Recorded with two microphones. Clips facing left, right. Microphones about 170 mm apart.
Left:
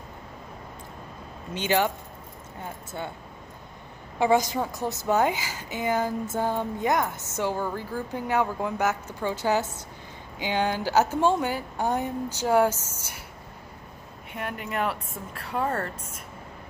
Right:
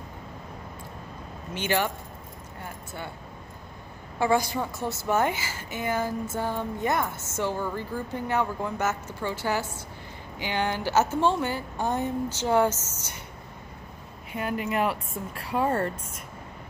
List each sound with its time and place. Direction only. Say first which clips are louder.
1.5 s a woman's voice: left 2 dB; 20° left (ahead or behind)
4.2 s a woman's voice: left 2 dB; 15° left (ahead or behind)
14.3 s speech: right 4 dB; centre (ahead or behind)